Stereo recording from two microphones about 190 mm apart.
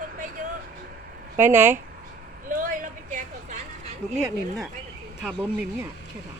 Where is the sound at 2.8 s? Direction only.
40° right (ahead or behind).